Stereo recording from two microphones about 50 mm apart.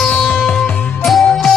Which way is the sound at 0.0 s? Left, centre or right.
Centre.